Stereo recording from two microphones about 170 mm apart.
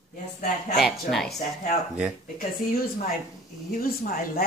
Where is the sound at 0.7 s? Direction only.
Centre (ahead or behind).